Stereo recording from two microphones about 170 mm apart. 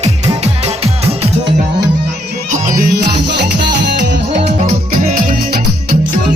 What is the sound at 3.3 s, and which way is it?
Music, 85° right.